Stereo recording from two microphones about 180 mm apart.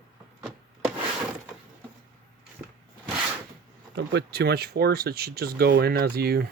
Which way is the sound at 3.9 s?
70° right (ahead or behind).